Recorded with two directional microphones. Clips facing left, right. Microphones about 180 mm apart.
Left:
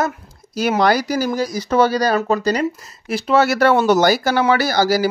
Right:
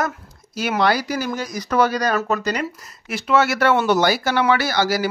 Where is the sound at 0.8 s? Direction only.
40° left (ahead or behind).